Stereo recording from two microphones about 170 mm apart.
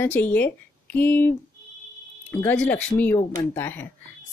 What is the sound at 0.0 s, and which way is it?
Speech, 10° left (ahead or behind).